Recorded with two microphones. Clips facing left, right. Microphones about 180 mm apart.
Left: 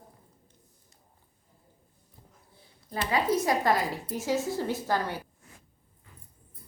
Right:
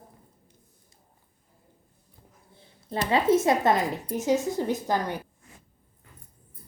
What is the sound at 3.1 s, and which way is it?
A woman's voice, 25° right (ahead or behind).